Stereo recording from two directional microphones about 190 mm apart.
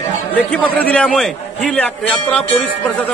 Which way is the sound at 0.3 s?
10° left (ahead or behind).